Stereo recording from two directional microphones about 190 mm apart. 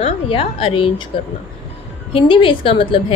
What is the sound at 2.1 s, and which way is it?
A woman's voice, 25° left (ahead or behind).